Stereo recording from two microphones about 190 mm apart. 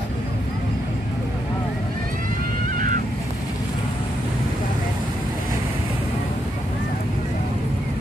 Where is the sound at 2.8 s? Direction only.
45° right (ahead or behind).